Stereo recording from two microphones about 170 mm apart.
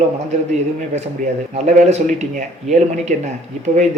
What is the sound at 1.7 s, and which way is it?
Speech, 40° right (ahead or behind).